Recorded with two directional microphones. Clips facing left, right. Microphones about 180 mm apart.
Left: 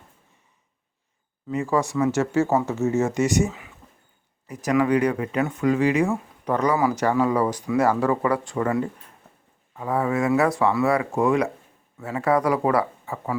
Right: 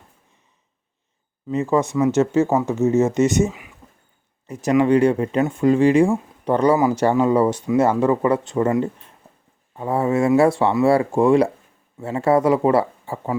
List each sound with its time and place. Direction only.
1.5 s speech: 20° right (ahead or behind)